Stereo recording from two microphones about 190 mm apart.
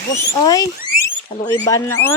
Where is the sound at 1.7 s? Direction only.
15° left (ahead or behind).